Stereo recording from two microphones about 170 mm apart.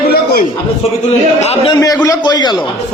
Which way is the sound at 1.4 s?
40° left (ahead or behind).